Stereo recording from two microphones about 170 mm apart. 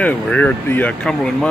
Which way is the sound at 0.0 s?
10° left (ahead or behind).